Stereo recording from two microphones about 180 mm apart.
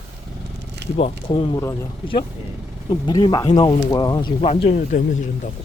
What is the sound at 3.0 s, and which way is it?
Speech, 25° left (ahead or behind).